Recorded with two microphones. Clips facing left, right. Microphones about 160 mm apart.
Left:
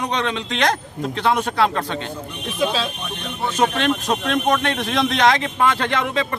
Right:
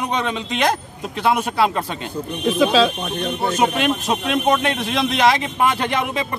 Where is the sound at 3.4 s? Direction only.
10° right (ahead or behind).